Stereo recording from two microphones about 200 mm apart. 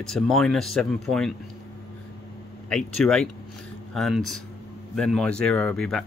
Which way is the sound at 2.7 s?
5° left (ahead or behind).